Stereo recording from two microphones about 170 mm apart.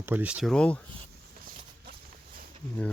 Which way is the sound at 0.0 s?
10° right (ahead or behind).